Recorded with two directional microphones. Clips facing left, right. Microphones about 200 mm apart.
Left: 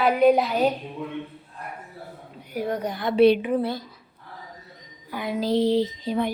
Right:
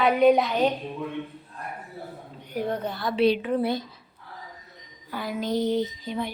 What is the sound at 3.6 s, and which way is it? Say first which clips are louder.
Speech: right 1 dB; 15° right (ahead or behind).